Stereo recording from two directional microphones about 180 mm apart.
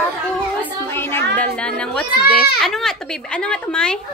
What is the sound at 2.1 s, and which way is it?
Speech, 60° left (ahead or behind).